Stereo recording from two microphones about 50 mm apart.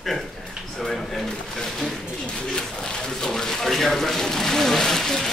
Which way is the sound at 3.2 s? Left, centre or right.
Centre.